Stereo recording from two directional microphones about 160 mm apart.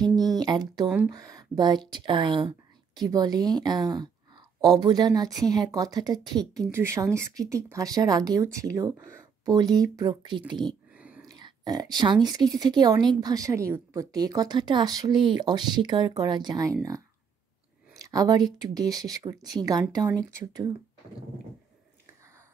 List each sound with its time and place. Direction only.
0.0 s a sound: 25° right (ahead or behind)
0.8 s speech: 10° right (ahead or behind)
1.1 s speech: 20° right (ahead or behind)
11.0 s whispering: 10° right (ahead or behind)
11.2 s speech: 25° right (ahead or behind)